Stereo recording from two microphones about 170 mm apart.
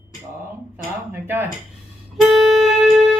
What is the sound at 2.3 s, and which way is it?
Music, centre (ahead or behind).